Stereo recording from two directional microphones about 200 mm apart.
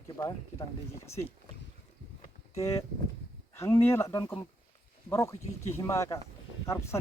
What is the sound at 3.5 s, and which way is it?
Speech, 15° left (ahead or behind).